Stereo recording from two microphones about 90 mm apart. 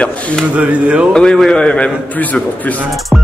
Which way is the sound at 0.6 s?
15° right (ahead or behind).